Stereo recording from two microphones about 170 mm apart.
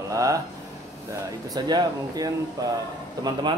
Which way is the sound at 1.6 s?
25° right (ahead or behind).